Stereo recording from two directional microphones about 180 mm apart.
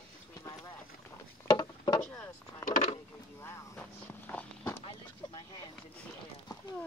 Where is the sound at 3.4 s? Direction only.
10° left (ahead or behind).